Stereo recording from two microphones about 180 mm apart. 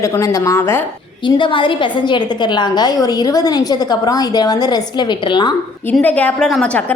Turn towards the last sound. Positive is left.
turn(degrees=5)  # may be behind; listen again after turning